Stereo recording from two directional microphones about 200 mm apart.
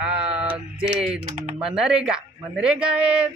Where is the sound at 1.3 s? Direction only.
40° right (ahead or behind).